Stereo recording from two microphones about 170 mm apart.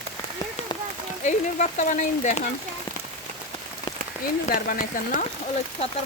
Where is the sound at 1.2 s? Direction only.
45° left (ahead or behind).